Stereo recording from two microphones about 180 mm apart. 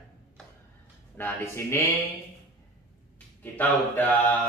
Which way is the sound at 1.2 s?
15° left (ahead or behind).